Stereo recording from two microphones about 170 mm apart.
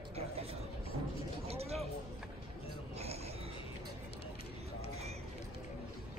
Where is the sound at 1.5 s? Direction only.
35° right (ahead or behind).